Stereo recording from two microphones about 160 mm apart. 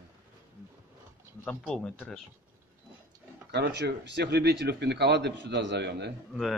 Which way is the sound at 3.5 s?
90° right.